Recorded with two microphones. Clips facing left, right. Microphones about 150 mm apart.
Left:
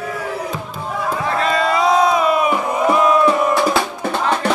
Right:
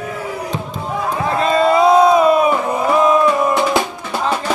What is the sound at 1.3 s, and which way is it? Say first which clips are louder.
Crowd: right 5 dB; 25° right (ahead or behind).